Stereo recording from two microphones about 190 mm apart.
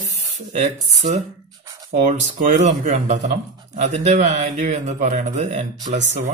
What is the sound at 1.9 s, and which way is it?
Speech, 40° right (ahead or behind).